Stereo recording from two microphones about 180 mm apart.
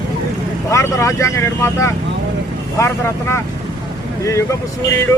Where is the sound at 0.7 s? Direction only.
15° left (ahead or behind).